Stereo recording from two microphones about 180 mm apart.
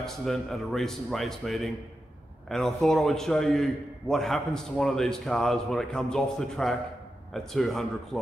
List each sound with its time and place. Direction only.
0.0 s a man's voice: centre (ahead or behind)